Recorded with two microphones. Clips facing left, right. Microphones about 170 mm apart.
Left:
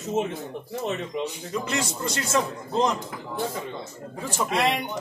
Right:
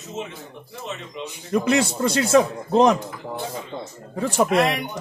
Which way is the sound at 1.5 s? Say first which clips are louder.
Right 12 dB; 65° right (ahead or behind).